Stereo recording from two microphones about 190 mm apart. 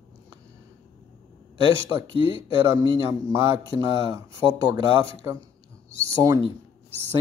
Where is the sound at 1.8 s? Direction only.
15° right (ahead or behind).